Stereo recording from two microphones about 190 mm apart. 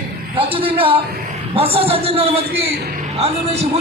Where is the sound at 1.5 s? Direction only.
30° right (ahead or behind).